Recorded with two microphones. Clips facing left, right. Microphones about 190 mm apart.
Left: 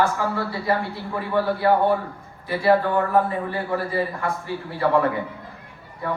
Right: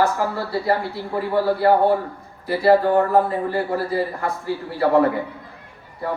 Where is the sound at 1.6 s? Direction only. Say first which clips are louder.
Right 3 dB; 40° right (ahead or behind).